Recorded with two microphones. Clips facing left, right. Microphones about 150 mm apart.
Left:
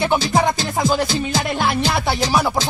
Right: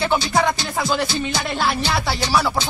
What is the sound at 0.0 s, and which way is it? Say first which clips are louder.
A man's voice: left 2 dB; 15° left (ahead or behind).